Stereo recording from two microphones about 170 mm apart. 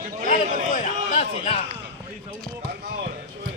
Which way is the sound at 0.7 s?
50° left (ahead or behind).